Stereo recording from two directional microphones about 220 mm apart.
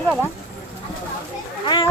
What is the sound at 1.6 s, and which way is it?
Speech, 20° left (ahead or behind).